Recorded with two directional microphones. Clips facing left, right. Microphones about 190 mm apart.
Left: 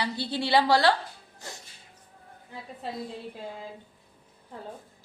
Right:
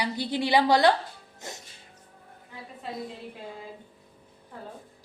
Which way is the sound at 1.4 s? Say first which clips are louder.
Right 2 dB; 20° right (ahead or behind).